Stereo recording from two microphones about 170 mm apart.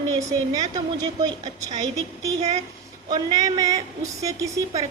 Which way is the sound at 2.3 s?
40° right (ahead or behind).